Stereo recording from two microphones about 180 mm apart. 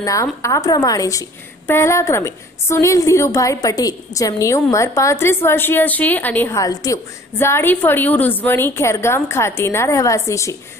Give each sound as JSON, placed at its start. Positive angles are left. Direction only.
{"t": 0.0, "sound": "a woman's voice", "side_deg": 20}